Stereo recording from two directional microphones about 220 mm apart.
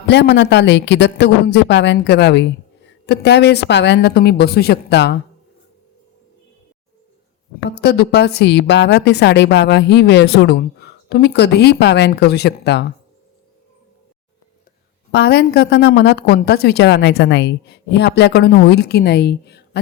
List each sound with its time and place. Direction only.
0.1 s a woman's voice: 50° left (ahead or behind)
7.8 s a woman's voice: 50° left (ahead or behind)
15.1 s a woman's voice: 50° left (ahead or behind)